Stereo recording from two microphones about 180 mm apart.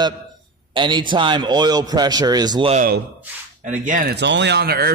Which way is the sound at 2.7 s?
50° right (ahead or behind).